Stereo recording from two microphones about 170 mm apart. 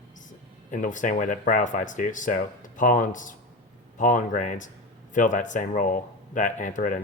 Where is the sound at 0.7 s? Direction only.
50° left (ahead or behind).